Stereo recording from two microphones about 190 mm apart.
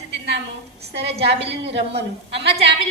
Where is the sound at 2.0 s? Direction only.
65° right (ahead or behind).